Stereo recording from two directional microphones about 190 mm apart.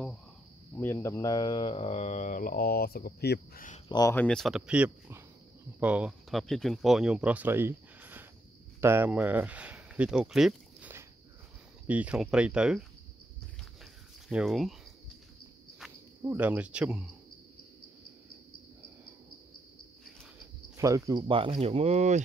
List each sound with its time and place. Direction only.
0.7 s speech: 15° left (ahead or behind); by 3.6 s 55° left (ahead or behind)
3.9 s speech: 15° left (ahead or behind); by 12.8 s 5° right (ahead or behind)
14.3 s speech: centre (ahead or behind)
16.2 s speech: 10° right (ahead or behind)
20.7 s speech: 15° right (ahead or behind); by 22.2 s 35° right (ahead or behind)